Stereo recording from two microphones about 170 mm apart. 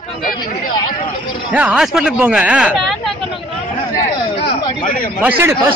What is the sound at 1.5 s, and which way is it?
Speech, 5° right (ahead or behind).